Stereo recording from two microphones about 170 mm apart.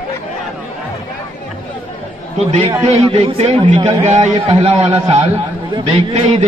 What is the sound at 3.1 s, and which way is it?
A man's voice, 35° right (ahead or behind).